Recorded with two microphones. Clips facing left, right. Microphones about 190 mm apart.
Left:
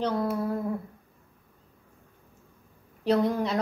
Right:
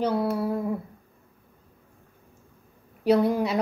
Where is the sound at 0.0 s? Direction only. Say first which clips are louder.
Right 2 dB; 10° right (ahead or behind).